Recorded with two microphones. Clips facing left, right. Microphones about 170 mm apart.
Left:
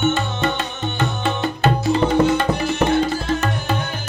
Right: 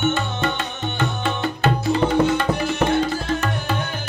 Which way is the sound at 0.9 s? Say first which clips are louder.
Left 2 dB; 20° left (ahead or behind).